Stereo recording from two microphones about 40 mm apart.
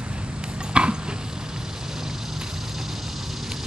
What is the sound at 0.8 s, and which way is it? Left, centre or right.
Horse, right.